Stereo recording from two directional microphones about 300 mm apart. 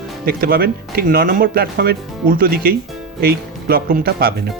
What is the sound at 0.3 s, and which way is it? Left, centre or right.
A man's voice, right.